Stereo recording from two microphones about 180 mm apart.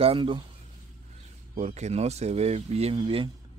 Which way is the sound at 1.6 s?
40° right (ahead or behind).